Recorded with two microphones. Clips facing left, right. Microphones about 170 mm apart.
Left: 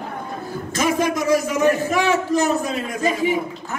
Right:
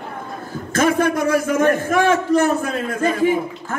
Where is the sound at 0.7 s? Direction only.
55° right (ahead or behind).